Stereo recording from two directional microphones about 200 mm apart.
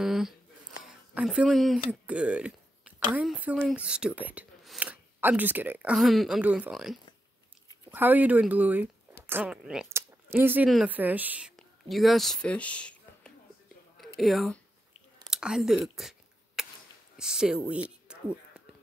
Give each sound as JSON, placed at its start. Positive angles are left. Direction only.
{"t": 0.0, "sound": "speech", "side_deg": 0}
{"t": 15.2, "sound": "scissors", "side_deg": 0}
{"t": 17.2, "sound": "speech", "side_deg": -5}
{"t": 17.8, "sound": "a sound", "side_deg": -5}